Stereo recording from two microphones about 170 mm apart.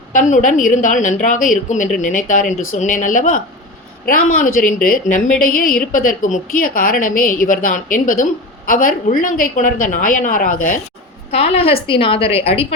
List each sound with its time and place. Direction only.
0.1 s a woman's voice: 45° left (ahead or behind)
11.3 s a woman's voice: 35° left (ahead or behind)